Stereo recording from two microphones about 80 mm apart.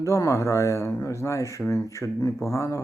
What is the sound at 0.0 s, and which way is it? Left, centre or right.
Speech, left.